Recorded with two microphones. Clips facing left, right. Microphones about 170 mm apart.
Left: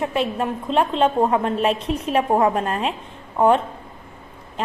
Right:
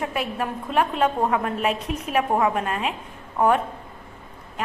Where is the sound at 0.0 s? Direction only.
25° left (ahead or behind).